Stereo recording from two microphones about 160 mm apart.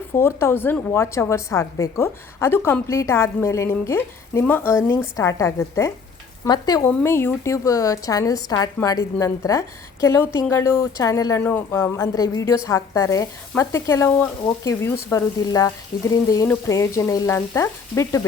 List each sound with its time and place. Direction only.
0.1 s a woman's voice: 15° left (ahead or behind)